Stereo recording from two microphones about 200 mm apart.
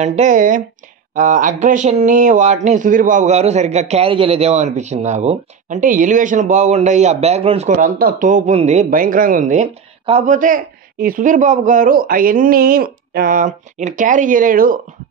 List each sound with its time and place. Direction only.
0.0 s speech: 35° right (ahead or behind)